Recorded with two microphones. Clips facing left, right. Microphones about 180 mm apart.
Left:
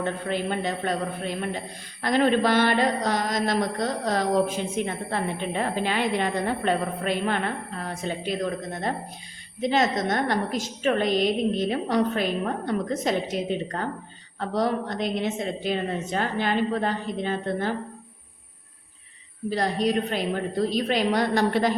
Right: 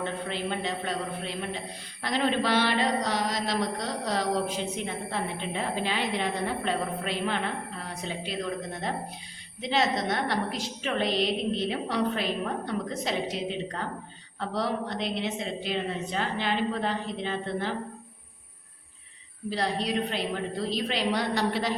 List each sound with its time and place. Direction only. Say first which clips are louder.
0.0 s a woman's voice: left 4 dB; 50° left (ahead or behind)
9.6 s a woman's voice: left 4 dB; 50° left (ahead or behind)
19.5 s a woman's voice: left 5 dB; 45° left (ahead or behind)